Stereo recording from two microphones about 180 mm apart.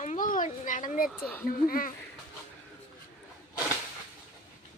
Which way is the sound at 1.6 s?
55° left (ahead or behind).